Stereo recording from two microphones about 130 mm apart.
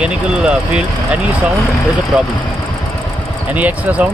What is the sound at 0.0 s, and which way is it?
Speech, 10° right (ahead or behind).